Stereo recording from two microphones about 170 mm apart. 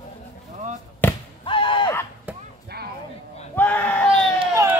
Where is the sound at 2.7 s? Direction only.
70° right (ahead or behind).